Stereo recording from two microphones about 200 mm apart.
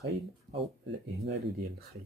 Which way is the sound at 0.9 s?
50° right (ahead or behind).